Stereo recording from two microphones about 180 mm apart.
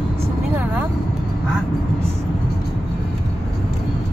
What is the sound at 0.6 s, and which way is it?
Vehicle, 10° right (ahead or behind).